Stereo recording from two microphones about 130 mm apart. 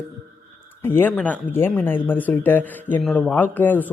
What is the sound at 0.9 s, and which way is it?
Speech, 15° left (ahead or behind).